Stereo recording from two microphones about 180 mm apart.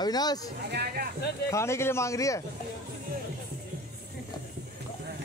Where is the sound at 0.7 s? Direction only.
65° right (ahead or behind).